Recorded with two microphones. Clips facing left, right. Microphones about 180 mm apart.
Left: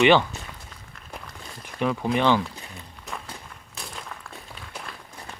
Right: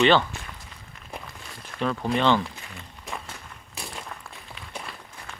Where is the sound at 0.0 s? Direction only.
15° left (ahead or behind).